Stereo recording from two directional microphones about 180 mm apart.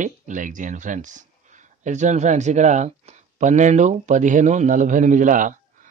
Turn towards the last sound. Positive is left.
turn(degrees=-45)  # may be behind; listen again after turning